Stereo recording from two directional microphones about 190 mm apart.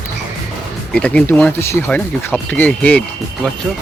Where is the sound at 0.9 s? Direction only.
5° left (ahead or behind).